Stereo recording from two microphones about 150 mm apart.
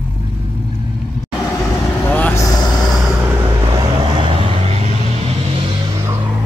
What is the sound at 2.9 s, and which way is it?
Vehicle, centre (ahead or behind).